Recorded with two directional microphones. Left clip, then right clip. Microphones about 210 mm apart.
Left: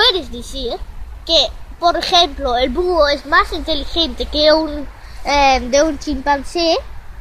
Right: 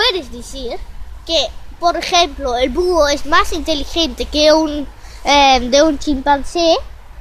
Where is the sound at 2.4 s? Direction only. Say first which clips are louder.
Even; 25° right (ahead or behind).